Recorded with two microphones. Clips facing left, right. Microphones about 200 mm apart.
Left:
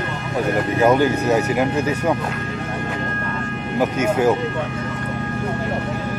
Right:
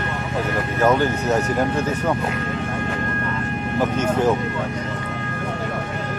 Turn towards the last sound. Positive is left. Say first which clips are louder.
# left 2 dB
turn(degrees=10)  # may be behind; listen again after turning